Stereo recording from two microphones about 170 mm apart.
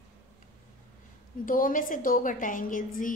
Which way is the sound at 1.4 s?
55° left (ahead or behind).